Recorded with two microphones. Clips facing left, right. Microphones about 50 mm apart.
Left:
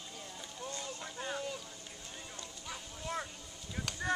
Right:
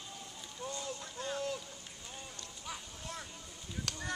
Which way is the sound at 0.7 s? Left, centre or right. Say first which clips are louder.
Right 1 dB; left.